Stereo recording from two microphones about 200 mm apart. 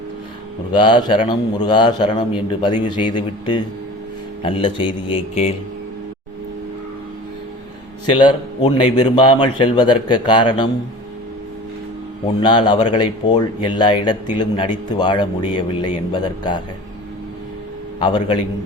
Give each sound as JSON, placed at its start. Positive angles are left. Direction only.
{"t": 0.7, "sound": "speech", "side_deg": 25}
{"t": 8.1, "sound": "speech", "side_deg": 25}
{"t": 12.4, "sound": "speech", "side_deg": 20}
{"t": 18.0, "sound": "speech", "side_deg": 20}